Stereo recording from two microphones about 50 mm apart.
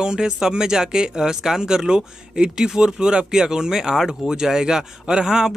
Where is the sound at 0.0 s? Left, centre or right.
Centre.